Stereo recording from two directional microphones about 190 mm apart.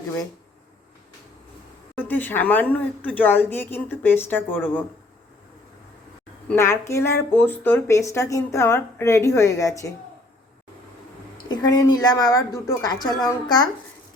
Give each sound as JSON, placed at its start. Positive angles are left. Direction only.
{"t": 2.0, "sound": "speech", "side_deg": 10}
{"t": 6.5, "sound": "speech", "side_deg": 15}
{"t": 11.4, "sound": "speech", "side_deg": 20}